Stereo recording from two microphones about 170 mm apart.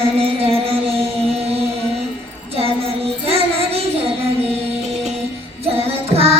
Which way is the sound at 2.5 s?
35° right (ahead or behind).